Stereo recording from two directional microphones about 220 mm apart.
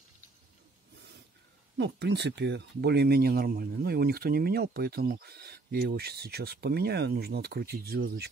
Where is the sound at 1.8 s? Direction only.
50° right (ahead or behind).